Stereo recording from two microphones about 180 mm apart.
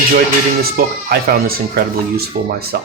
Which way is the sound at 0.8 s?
50° right (ahead or behind).